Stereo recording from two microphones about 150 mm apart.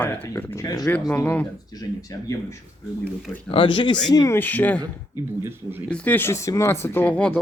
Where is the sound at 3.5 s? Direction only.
35° left (ahead or behind).